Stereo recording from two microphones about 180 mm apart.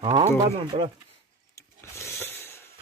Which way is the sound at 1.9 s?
15° left (ahead or behind).